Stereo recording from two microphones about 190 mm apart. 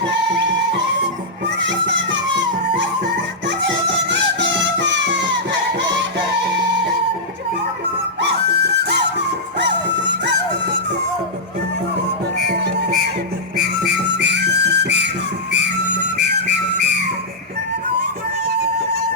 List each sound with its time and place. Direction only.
0.0 s music: 65° right (ahead or behind)
1.6 s music: 70° right (ahead or behind)
4.1 s music: 65° right (ahead or behind)
9.6 s music: 65° right (ahead or behind)
12.5 s music: 60° right (ahead or behind)